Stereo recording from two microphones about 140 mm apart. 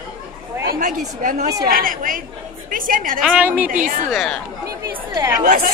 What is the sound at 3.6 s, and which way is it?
Speech, 65° right (ahead or behind).